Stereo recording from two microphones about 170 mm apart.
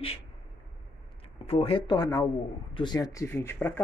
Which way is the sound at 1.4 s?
35° left (ahead or behind).